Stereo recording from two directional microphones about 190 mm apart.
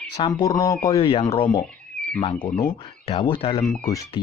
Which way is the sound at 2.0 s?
5° left (ahead or behind).